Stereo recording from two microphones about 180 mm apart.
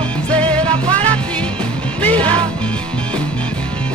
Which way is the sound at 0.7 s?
30° right (ahead or behind).